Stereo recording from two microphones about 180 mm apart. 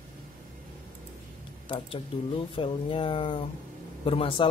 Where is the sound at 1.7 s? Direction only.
30° left (ahead or behind).